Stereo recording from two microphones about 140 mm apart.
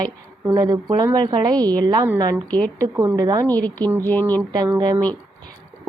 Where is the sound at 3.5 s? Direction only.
10° left (ahead or behind).